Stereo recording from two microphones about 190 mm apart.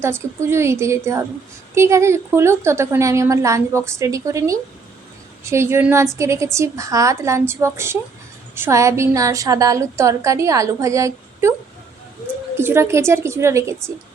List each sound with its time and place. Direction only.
0.0 s a woman's voice: 15° right (ahead or behind)
12.5 s a woman's voice: 15° right (ahead or behind)